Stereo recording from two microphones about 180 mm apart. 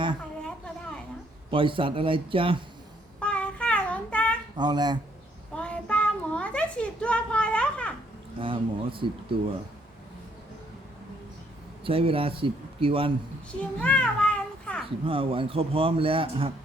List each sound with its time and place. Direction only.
1.5 s a man's voice: 30° right (ahead or behind)
3.2 s child singing: 5° left (ahead or behind)
4.5 s a man's voice: 25° right (ahead or behind)
5.5 s child singing: 5° left (ahead or behind)
8.4 s a man's voice: 30° right (ahead or behind)
11.8 s a man's voice: 30° right (ahead or behind)
13.6 s children playing: 5° left (ahead or behind)
15.0 s a man's voice: 30° right (ahead or behind)